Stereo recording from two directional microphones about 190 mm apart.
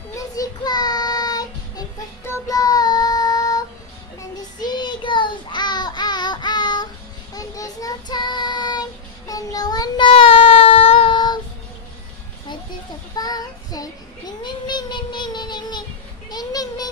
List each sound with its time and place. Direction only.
0.1 s child singing: 20° left (ahead or behind)
13.1 s child singing: 20° left (ahead or behind)
16.3 s a sound: 20° left (ahead or behind)